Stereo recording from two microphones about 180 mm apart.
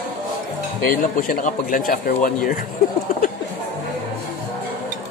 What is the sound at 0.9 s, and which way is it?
Speech, 50° left (ahead or behind).